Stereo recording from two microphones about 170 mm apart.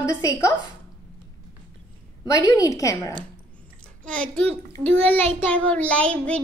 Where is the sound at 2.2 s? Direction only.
20° left (ahead or behind).